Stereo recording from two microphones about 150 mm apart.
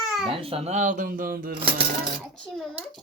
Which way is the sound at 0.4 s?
40° right (ahead or behind).